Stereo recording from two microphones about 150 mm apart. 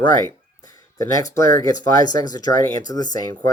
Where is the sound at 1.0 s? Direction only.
20° left (ahead or behind).